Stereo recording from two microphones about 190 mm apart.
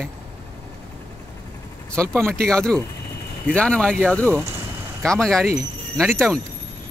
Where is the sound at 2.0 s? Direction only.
15° right (ahead or behind).